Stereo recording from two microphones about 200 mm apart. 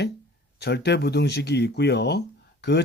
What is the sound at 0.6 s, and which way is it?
Speech, 55° left (ahead or behind).